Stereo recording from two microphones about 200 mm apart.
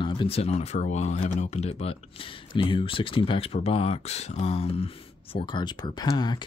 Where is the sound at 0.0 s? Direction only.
25° left (ahead or behind).